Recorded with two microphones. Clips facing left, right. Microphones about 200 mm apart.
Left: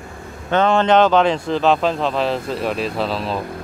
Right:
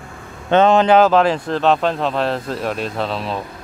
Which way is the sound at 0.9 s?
5° right (ahead or behind).